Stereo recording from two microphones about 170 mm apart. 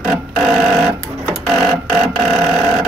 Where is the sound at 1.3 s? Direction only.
5° right (ahead or behind).